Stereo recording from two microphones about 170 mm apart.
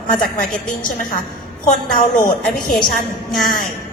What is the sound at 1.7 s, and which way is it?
A woman's voice, 60° left (ahead or behind).